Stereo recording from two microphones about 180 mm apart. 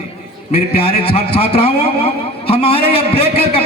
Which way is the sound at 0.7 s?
35° left (ahead or behind).